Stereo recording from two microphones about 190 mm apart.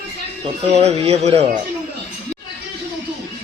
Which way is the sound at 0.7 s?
35° right (ahead or behind).